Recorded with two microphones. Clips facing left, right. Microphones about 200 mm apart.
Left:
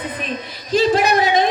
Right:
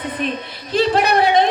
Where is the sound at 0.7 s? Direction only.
60° right (ahead or behind).